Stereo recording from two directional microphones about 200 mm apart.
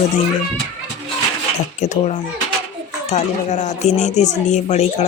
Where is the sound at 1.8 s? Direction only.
35° left (ahead or behind).